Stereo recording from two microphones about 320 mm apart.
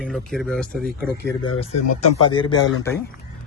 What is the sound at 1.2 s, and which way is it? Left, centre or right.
Speech, left.